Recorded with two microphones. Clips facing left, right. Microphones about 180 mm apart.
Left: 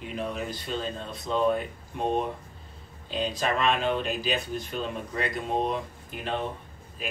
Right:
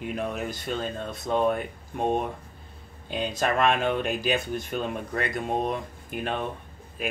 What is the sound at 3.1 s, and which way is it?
A man's voice, 55° right (ahead or behind).